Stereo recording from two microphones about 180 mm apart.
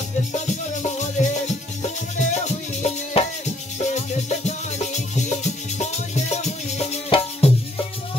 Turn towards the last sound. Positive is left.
turn(degrees=35)  # may be behind; listen again after turning